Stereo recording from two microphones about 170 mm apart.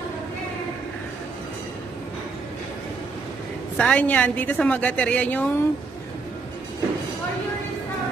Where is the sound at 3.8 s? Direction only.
5° left (ahead or behind).